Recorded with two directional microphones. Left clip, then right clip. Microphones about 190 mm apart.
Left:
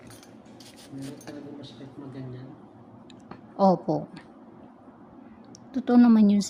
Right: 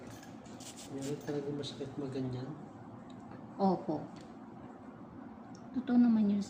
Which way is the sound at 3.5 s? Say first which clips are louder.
Left 11 dB; 65° left (ahead or behind).